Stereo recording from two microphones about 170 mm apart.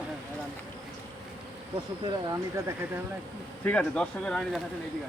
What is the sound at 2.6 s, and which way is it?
Speech, 15° right (ahead or behind).